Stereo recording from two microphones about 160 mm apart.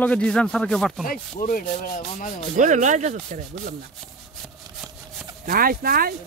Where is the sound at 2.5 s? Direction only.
50° right (ahead or behind).